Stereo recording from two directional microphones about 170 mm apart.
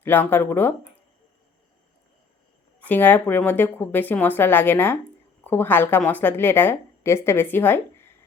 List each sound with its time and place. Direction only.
0.0 s a woman's voice: 10° left (ahead or behind)
2.8 s a woman's voice: 10° left (ahead or behind)